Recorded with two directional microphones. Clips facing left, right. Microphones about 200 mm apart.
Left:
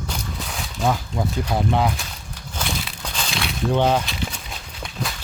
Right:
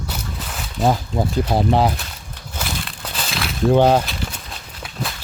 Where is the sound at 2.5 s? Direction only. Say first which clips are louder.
Even; centre (ahead or behind).